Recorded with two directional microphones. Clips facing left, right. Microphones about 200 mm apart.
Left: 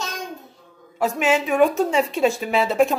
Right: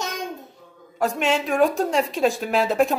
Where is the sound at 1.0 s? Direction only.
5° left (ahead or behind).